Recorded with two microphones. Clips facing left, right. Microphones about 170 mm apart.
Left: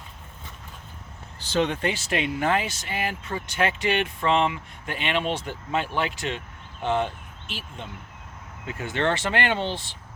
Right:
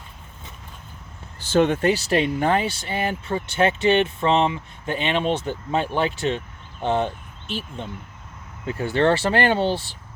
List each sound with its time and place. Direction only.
1.5 s speech: 50° right (ahead or behind); by 7.1 s 25° right (ahead or behind)
8.6 s speech: 35° right (ahead or behind)